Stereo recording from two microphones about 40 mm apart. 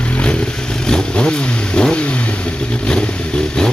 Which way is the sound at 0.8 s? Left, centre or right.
Centre.